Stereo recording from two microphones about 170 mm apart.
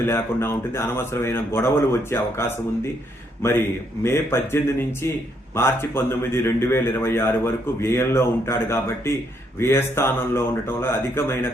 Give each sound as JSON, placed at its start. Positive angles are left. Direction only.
{"t": 0.0, "sound": "a man's voice", "side_deg": 15}
{"t": 4.0, "sound": "a man's voice", "side_deg": 15}